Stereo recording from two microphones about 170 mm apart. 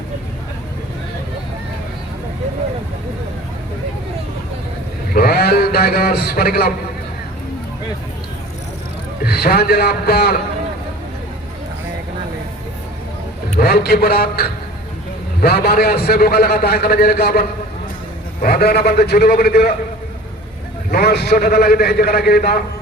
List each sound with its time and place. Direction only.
5.1 s a man's voice: 65° left (ahead or behind)
9.2 s a man's voice: 65° left (ahead or behind)
13.6 s a man's voice: 65° left (ahead or behind)
18.4 s a man's voice: 65° left (ahead or behind)
20.9 s a man's voice: 70° left (ahead or behind)